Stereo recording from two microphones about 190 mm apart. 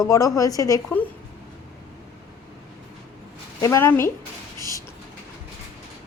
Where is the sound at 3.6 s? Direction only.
15° left (ahead or behind).